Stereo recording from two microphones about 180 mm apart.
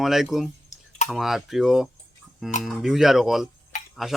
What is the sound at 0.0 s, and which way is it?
Speech, centre (ahead or behind).